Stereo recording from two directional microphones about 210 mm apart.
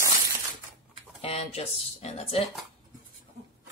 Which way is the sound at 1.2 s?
30° left (ahead or behind).